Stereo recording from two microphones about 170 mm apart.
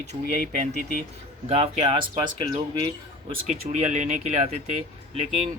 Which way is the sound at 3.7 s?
45° right (ahead or behind).